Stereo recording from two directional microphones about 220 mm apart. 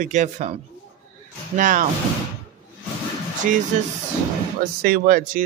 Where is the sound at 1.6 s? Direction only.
35° right (ahead or behind).